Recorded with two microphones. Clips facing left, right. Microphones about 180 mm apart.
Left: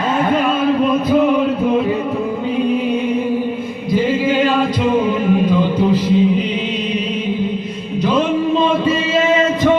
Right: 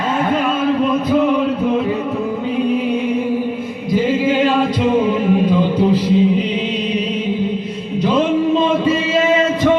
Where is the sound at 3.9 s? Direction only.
15° right (ahead or behind).